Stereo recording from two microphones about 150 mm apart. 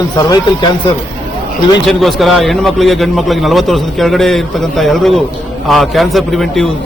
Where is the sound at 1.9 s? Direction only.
Centre (ahead or behind).